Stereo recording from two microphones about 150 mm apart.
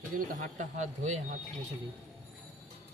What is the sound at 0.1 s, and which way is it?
Speech, 60° right (ahead or behind).